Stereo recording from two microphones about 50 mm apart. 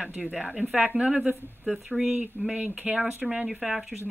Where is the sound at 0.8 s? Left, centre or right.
Right.